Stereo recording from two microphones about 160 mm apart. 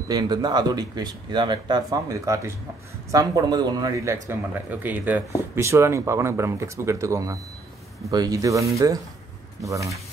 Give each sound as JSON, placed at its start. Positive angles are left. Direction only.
{"t": 0.1, "sound": "speech", "side_deg": -25}